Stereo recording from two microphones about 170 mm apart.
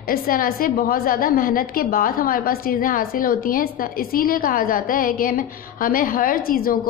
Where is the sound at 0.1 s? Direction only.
60° left (ahead or behind).